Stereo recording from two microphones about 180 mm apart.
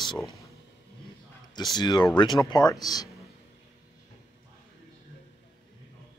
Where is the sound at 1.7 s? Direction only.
25° left (ahead or behind).